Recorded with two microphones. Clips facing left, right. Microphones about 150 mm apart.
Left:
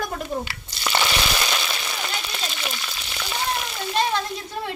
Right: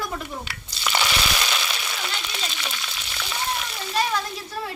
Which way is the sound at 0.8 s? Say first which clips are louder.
Left 1 dB; 15° left (ahead or behind).